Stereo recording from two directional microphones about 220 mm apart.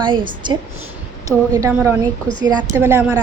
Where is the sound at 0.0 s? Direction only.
20° right (ahead or behind).